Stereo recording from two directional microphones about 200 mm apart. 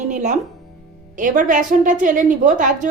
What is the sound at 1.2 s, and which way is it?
A woman's voice, 40° right (ahead or behind).